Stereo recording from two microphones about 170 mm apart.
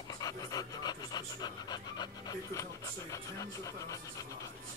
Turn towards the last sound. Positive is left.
turn(degrees=20)  # may be behind; listen again after turning